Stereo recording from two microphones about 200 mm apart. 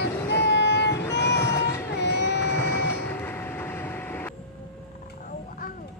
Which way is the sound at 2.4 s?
10° left (ahead or behind).